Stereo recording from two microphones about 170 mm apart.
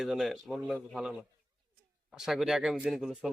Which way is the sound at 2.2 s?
Centre (ahead or behind).